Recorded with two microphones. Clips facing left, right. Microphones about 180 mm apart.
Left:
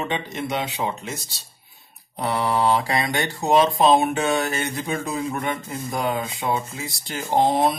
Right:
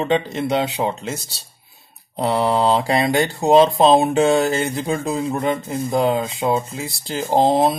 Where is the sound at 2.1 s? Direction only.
25° right (ahead or behind).